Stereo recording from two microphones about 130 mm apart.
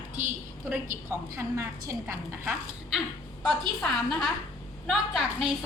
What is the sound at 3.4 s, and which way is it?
A woman's voice, 5° left (ahead or behind).